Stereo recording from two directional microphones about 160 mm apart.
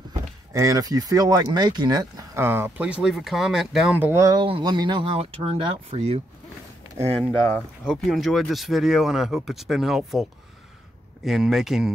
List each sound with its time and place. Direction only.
0.5 s speech: 20° right (ahead or behind); by 6.2 s 40° right (ahead or behind)
7.4 s speech: 5° left (ahead or behind)
11.2 s speech: centre (ahead or behind)